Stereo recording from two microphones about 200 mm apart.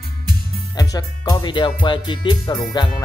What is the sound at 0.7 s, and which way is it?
Speech, 20° left (ahead or behind).